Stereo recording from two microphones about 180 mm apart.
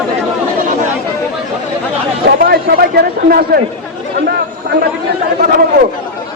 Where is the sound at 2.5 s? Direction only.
60° right (ahead or behind).